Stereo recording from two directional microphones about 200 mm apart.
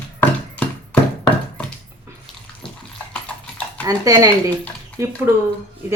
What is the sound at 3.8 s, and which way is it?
Speech, 15° right (ahead or behind).